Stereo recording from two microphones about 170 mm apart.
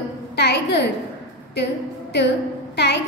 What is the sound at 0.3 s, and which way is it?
Speech, 75° left (ahead or behind).